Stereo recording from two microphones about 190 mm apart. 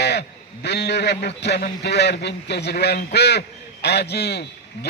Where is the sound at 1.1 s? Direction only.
60° left (ahead or behind).